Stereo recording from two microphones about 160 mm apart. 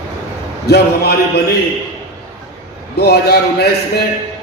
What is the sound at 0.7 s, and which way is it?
Speech, 85° left.